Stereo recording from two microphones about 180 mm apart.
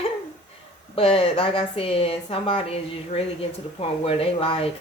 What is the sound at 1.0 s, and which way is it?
A woman's voice, 30° left (ahead or behind).